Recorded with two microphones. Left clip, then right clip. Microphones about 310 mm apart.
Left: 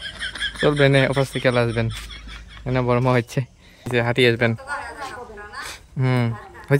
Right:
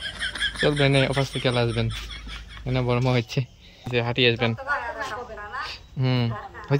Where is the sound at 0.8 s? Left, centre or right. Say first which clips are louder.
Left 7 dB; centre.